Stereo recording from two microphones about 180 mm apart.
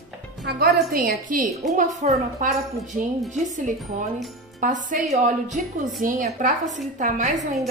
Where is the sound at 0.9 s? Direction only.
55° right (ahead or behind).